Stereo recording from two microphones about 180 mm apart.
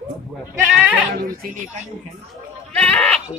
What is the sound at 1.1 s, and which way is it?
Speech, 55° right (ahead or behind).